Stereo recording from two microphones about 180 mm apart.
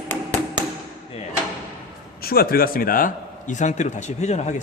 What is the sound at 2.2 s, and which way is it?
A man's voice, 55° left (ahead or behind).